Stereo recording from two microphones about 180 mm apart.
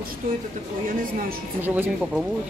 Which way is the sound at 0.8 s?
50° right (ahead or behind).